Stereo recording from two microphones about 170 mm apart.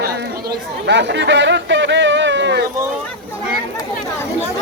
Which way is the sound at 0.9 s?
90° right.